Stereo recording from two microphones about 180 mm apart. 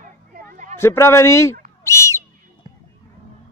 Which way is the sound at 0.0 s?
50° right (ahead or behind).